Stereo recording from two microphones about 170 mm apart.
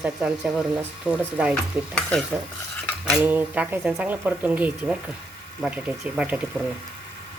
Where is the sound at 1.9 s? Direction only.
5° left (ahead or behind).